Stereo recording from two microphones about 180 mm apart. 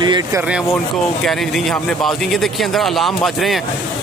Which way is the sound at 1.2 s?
Centre (ahead or behind).